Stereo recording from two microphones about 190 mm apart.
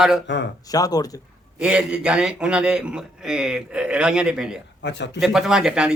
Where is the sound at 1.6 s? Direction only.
5° right (ahead or behind).